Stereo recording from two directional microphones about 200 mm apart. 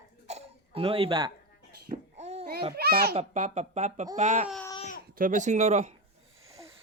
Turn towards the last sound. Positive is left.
turn(degrees=-35)  # may be behind; listen again after turning